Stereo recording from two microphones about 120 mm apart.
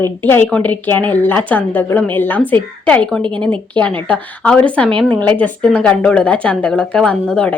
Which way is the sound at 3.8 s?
10° left (ahead or behind).